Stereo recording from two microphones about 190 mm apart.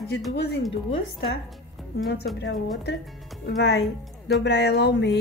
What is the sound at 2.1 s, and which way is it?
Speech, 65° left (ahead or behind).